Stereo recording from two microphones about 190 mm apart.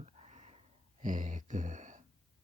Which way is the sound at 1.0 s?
45° right (ahead or behind).